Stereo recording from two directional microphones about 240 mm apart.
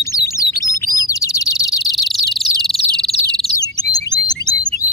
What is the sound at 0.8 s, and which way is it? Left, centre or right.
Bird, centre.